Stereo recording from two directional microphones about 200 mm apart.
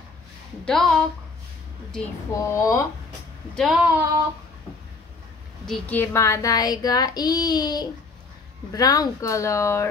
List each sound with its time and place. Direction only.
0.7 s speech: centre (ahead or behind)
2.3 s speech: 15° left (ahead or behind)
3.5 s speech: centre (ahead or behind)
5.7 s child singing: 10° left (ahead or behind)
8.7 s speech: 20° left (ahead or behind)